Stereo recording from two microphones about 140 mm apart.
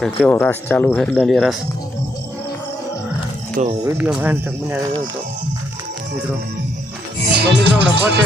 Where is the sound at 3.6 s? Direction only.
65° right (ahead or behind).